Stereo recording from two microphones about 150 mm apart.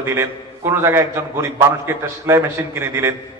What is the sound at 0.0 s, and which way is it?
A man's voice, 15° right (ahead or behind).